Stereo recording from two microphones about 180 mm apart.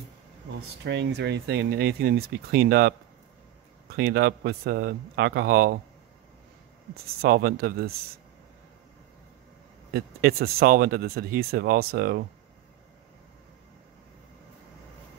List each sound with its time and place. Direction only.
0.8 s speech: 75° right (ahead or behind)
3.9 s speech: 60° right (ahead or behind)
7.2 s speech: 60° right (ahead or behind)
9.9 s speech: 60° right (ahead or behind)